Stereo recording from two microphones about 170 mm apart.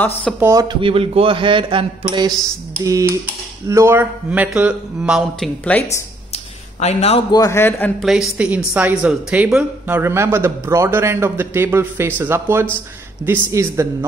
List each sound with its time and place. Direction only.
0.4 s a woman's voice: 20° right (ahead or behind); by 5.5 s 5° right (ahead or behind)
5.7 s a man's voice: 15° left (ahead or behind)
6.3 s a sound: 40° left (ahead or behind)
7.2 s a man's voice: 20° left (ahead or behind)
8.0 s a woman's voice: centre (ahead or behind)